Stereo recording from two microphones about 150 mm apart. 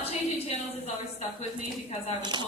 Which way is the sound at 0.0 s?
45° left (ahead or behind).